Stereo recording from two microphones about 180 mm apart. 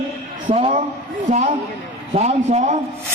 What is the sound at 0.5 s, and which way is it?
Speech, 35° right (ahead or behind).